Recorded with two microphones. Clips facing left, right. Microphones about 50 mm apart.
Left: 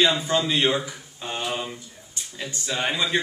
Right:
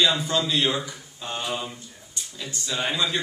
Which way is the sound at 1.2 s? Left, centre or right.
Centre.